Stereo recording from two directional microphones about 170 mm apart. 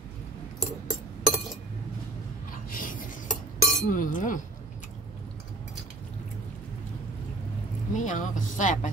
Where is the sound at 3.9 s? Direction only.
50° left (ahead or behind).